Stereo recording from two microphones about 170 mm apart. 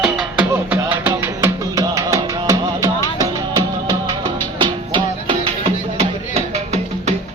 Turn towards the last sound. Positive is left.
turn(degrees=-40)  # may be behind; listen again after turning